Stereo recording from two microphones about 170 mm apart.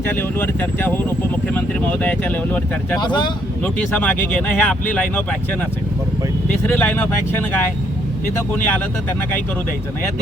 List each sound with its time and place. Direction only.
0.2 s speech: 10° left (ahead or behind)
3.0 s speech: 25° left (ahead or behind)
3.6 s speech: 10° left (ahead or behind)
6.7 s speech: 10° left (ahead or behind)
8.5 s speech: 10° left (ahead or behind)